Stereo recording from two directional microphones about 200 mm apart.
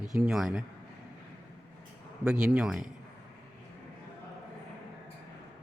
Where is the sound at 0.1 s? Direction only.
Centre (ahead or behind).